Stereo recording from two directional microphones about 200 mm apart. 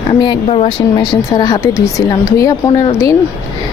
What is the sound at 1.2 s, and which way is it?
Speech, 20° left (ahead or behind).